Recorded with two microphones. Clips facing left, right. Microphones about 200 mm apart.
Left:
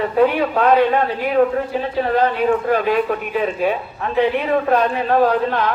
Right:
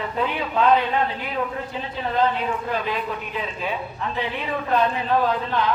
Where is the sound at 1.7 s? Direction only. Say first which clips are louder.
Left 4 dB; 55° left (ahead or behind).